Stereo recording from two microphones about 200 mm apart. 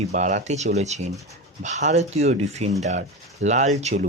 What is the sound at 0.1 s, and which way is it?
Speech, 35° right (ahead or behind).